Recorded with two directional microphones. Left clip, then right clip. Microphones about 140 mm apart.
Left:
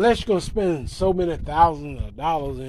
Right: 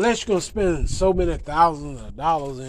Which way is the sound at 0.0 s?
25° left (ahead or behind).